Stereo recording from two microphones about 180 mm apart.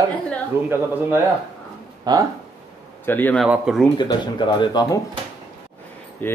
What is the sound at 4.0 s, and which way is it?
Speech, 25° left (ahead or behind).